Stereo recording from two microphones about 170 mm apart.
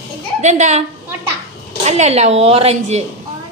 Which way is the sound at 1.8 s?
40° right (ahead or behind).